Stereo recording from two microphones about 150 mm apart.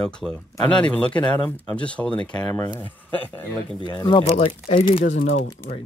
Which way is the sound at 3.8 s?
35° left (ahead or behind).